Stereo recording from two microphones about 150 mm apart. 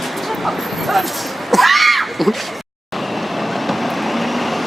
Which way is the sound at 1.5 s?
Centre (ahead or behind).